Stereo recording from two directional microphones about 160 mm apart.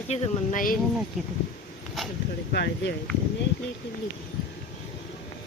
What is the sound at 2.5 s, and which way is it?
Speech, 90° left.